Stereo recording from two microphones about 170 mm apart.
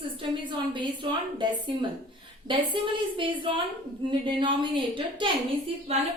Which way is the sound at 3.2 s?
30° right (ahead or behind).